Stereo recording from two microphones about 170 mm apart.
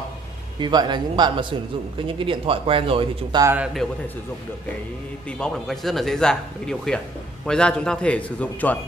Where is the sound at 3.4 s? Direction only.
15° right (ahead or behind).